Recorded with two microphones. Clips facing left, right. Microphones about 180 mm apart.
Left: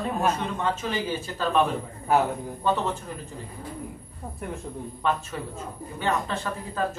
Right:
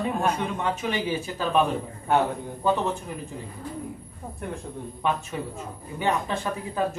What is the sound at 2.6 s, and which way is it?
Speech, 10° right (ahead or behind).